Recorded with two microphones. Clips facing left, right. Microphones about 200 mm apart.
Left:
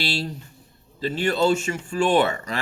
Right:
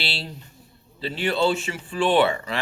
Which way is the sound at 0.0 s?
45° left (ahead or behind).